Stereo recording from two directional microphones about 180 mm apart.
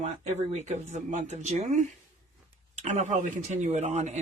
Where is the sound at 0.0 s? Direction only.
40° right (ahead or behind).